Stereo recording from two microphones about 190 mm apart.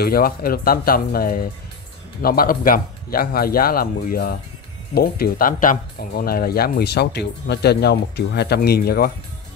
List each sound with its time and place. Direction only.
0.0 s speech: 50° left (ahead or behind)